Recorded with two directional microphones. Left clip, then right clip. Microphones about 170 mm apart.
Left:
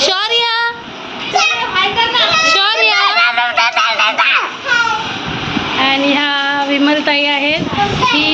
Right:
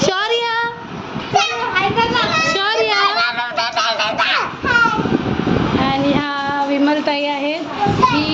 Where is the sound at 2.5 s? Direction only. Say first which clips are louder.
Left 5 dB; 15° right (ahead or behind).